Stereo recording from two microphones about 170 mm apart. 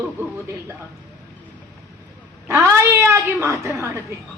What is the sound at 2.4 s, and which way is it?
A woman's voice, 15° right (ahead or behind).